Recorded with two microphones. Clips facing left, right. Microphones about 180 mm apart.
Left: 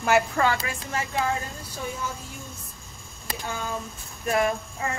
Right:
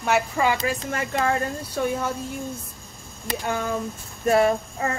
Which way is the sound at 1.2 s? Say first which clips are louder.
Right 5 dB; 65° right (ahead or behind).